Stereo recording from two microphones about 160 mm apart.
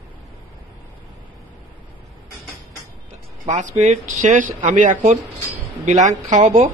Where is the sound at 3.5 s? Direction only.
50° right (ahead or behind).